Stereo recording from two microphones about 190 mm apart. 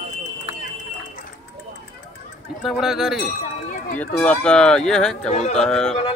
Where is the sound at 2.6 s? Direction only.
Centre (ahead or behind).